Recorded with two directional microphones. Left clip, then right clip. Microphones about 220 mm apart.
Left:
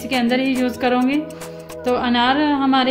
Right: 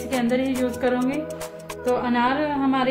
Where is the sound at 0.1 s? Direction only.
35° left (ahead or behind).